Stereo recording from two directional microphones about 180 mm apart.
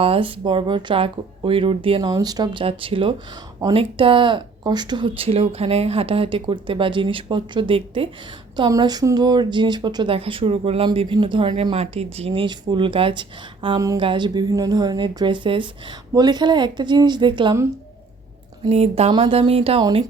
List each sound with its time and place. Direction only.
0.0 s speech: 30° right (ahead or behind)
18.7 s speech: 35° right (ahead or behind)